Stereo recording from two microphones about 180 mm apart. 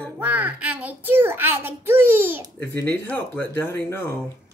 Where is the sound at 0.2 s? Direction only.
10° right (ahead or behind).